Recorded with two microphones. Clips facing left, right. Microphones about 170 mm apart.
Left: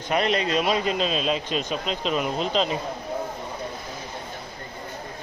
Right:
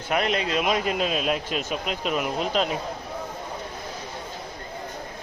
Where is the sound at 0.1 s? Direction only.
5° right (ahead or behind).